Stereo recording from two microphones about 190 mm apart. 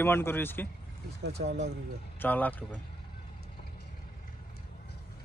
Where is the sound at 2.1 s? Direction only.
10° left (ahead or behind).